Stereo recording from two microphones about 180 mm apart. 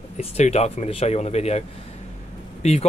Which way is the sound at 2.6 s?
35° left (ahead or behind).